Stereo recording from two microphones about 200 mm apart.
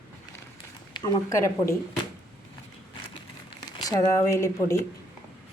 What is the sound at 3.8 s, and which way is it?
Speech, 15° left (ahead or behind).